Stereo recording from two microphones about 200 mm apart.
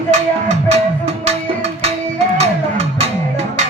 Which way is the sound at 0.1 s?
35° right (ahead or behind).